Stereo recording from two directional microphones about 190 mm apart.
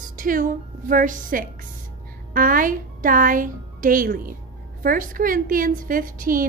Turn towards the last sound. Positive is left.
turn(degrees=-45)  # may be behind; listen again after turning